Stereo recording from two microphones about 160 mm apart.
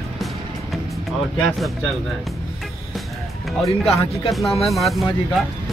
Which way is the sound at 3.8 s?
Centre (ahead or behind).